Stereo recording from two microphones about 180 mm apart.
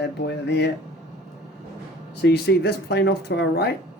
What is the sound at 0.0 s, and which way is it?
Speech, 70° left (ahead or behind).